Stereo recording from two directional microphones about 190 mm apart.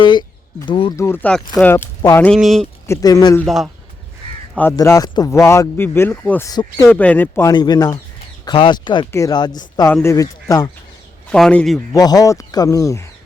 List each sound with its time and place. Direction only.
0.0 s speech: 25° left (ahead or behind); by 2.6 s centre (ahead or behind)
2.8 s speech: 15° left (ahead or behind)
3.4 s a man's voice: centre (ahead or behind)
4.5 s speech: 10° left (ahead or behind)
6.5 s speech: 20° left (ahead or behind)
6.8 s speech: 5° left (ahead or behind)
7.5 s speech: 20° left (ahead or behind)
11.3 s a man's voice: 5° left (ahead or behind)
11.9 s speech: 20° left (ahead or behind)